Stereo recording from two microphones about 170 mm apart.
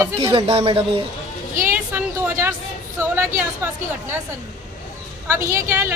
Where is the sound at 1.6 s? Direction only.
10° right (ahead or behind).